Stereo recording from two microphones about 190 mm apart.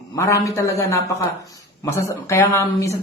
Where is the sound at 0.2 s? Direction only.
15° left (ahead or behind).